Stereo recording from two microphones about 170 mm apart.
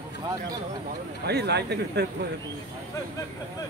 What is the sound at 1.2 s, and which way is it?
Speech, 75° right (ahead or behind).